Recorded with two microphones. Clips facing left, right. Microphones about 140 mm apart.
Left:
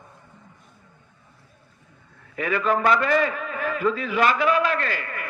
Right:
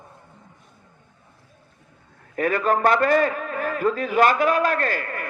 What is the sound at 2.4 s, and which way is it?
A man's voice, 45° right (ahead or behind).